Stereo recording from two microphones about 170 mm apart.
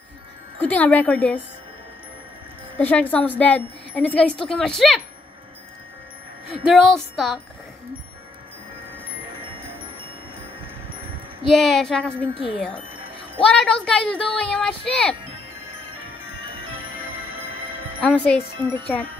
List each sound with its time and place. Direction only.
0.6 s a woman's voice: 10° left (ahead or behind)
2.8 s a woman's voice: 10° left (ahead or behind)
6.7 s speech: centre (ahead or behind)
9.4 s music: 30° right (ahead or behind)
11.4 s speech: centre (ahead or behind)
18.0 s a woman's voice: 10° left (ahead or behind)